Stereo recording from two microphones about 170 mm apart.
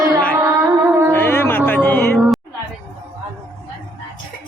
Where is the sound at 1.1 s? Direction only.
15° left (ahead or behind).